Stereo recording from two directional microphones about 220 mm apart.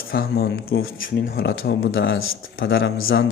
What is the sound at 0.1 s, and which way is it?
Speech, 45° left (ahead or behind).